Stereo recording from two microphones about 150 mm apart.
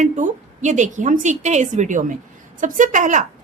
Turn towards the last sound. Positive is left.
turn(degrees=-55)  # may be behind; listen again after turning